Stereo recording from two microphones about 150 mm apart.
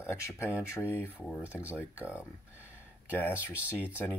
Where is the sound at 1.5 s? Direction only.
10° right (ahead or behind).